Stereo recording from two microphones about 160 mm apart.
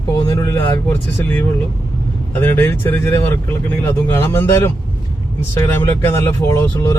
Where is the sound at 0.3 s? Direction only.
15° left (ahead or behind).